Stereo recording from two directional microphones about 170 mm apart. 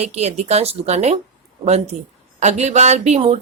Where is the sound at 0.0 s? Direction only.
40° right (ahead or behind).